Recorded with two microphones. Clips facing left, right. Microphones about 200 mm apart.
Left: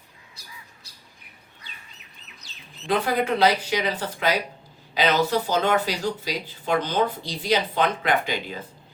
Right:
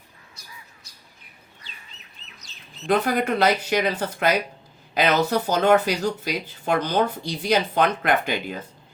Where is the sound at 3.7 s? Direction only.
50° right (ahead or behind).